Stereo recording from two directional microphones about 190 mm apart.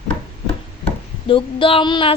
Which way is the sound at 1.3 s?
30° left (ahead or behind).